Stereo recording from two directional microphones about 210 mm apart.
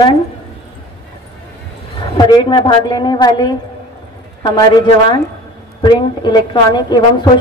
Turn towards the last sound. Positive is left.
turn(degrees=20)  # may be behind; listen again after turning